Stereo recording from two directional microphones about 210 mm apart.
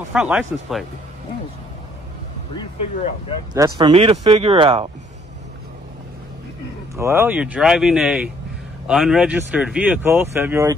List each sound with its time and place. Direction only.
0.1 s speech: 5° right (ahead or behind)
3.5 s speech: 15° right (ahead or behind)
3.9 s speech: 25° right (ahead or behind)
7.0 s speech: 10° right (ahead or behind)